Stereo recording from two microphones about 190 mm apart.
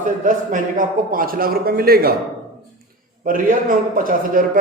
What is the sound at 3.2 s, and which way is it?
Speech, 45° right (ahead or behind).